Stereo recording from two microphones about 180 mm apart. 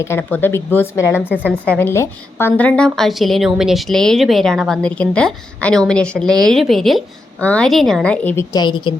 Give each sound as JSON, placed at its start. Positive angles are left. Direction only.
{"t": 0.0, "sound": "a woman's voice", "side_deg": 15}
{"t": 8.5, "sound": "speech", "side_deg": 25}